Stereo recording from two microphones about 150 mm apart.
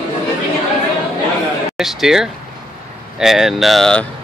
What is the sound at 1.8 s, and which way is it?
Speech, centre (ahead or behind).